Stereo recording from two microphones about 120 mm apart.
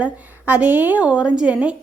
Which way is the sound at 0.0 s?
15° right (ahead or behind).